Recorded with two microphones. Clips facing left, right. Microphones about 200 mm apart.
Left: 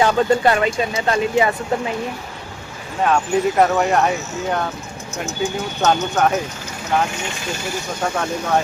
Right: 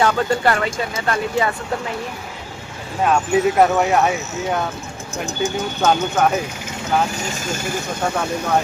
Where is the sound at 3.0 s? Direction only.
Centre (ahead or behind).